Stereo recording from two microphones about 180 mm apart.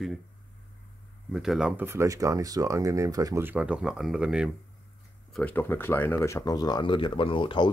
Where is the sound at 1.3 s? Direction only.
5° right (ahead or behind).